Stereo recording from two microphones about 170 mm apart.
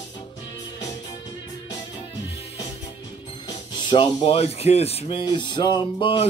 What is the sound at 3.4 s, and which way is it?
Speech, 30° left (ahead or behind).